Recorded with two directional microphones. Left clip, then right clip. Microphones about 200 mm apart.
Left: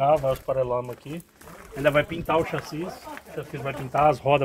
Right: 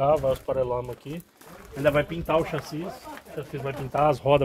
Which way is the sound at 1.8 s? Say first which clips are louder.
Left 1 dB; 45° right (ahead or behind).